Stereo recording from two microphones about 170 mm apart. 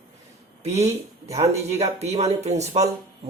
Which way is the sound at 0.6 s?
40° right (ahead or behind).